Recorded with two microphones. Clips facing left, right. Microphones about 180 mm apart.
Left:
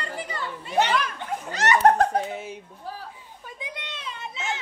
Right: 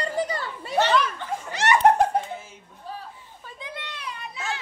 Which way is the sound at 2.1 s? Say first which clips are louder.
Left 1 dB; 70° left (ahead or behind).